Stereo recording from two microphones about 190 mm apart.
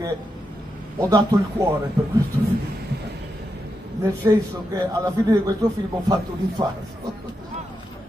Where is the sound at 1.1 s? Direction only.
15° right (ahead or behind).